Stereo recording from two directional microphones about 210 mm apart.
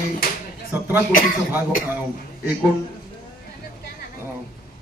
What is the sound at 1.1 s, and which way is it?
Speech, 40° left (ahead or behind).